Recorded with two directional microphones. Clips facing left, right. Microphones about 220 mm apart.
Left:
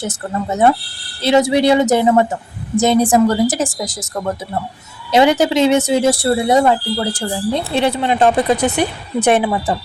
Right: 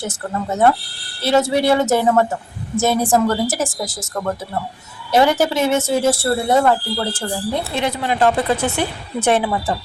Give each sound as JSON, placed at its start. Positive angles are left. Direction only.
{"t": 0.5, "sound": "speech", "side_deg": 15}
{"t": 7.8, "sound": "speech", "side_deg": 25}